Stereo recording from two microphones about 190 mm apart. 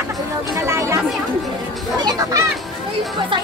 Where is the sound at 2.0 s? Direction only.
20° right (ahead or behind).